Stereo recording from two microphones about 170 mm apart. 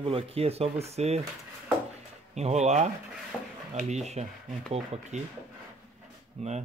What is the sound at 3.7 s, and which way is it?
Speech, 40° right (ahead or behind).